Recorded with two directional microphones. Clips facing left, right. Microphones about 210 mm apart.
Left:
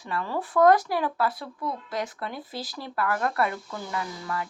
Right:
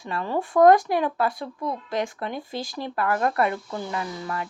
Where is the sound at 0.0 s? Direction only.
25° right (ahead or behind).